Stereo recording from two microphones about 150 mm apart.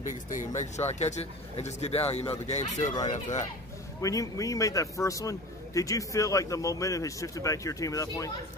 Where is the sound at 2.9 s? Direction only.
25° left (ahead or behind).